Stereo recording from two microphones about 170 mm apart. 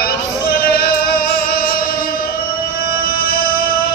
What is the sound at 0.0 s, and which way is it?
Music, 65° left (ahead or behind).